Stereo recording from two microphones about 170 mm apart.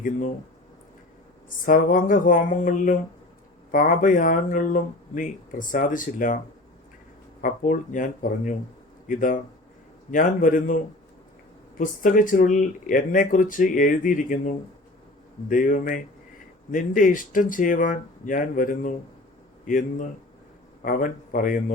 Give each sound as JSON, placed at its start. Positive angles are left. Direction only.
{"t": 1.6, "sound": "speech", "side_deg": 55}
{"t": 7.4, "sound": "speech", "side_deg": 50}
{"t": 12.0, "sound": "speech", "side_deg": 50}